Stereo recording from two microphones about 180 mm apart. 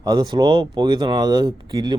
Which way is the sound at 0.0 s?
20° right (ahead or behind).